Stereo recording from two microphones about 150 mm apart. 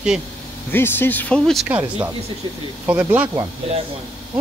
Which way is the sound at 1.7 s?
15° right (ahead or behind).